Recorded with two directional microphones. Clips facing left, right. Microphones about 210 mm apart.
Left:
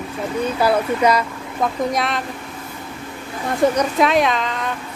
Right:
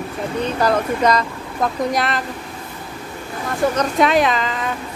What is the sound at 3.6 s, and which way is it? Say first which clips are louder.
Speech: left 3 dB; 20° left (ahead or behind).